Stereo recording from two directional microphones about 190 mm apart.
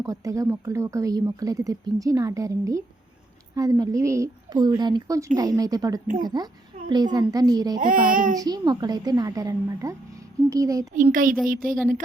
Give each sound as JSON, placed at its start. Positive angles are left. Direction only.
{"t": 0.0, "sound": "a woman's voice", "side_deg": -15}
{"t": 7.8, "sound": "speech", "side_deg": -45}
{"t": 8.4, "sound": "a woman's voice", "side_deg": -20}
{"t": 11.1, "sound": "speech", "side_deg": -45}